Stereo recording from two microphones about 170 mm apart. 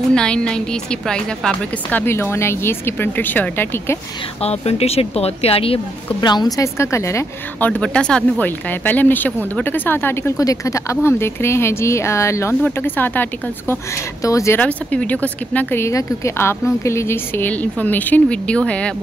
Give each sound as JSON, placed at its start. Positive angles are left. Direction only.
{"t": 0.1, "sound": "a woman's voice", "side_deg": 5}
{"t": 4.4, "sound": "a woman's voice", "side_deg": 35}